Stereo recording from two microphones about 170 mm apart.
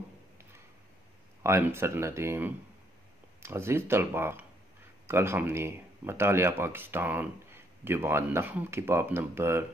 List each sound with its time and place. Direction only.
1.4 s speech: 15° right (ahead or behind)